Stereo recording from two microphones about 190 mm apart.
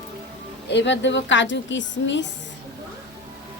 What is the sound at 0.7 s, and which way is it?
A woman's voice, 70° left (ahead or behind).